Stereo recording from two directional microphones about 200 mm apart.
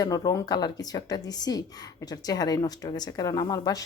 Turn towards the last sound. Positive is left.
turn(degrees=20)  # may be behind; listen again after turning